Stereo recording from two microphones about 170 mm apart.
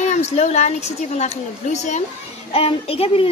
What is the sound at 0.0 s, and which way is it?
A child's voice, 40° left (ahead or behind).